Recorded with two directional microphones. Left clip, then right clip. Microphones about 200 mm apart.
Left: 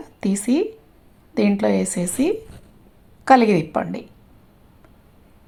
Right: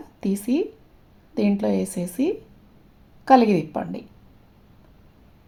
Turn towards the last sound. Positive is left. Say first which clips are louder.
# left 4 dB
turn(degrees=5)  # may be behind; listen again after turning